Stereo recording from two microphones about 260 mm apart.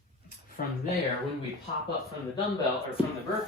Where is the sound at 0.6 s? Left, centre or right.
Left.